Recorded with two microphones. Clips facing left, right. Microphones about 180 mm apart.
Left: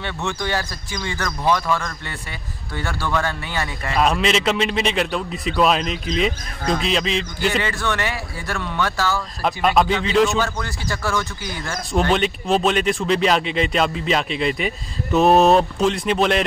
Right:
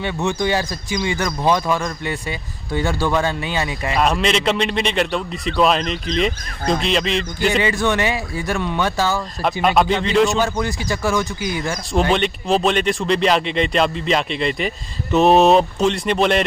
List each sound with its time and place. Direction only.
0.0 s speech: 15° right (ahead or behind)
4.0 s a man's voice: centre (ahead or behind)
7.5 s speech: 15° right (ahead or behind)
9.4 s a man's voice: centre (ahead or behind)
10.4 s speech: 15° right (ahead or behind)
12.1 s a man's voice: centre (ahead or behind)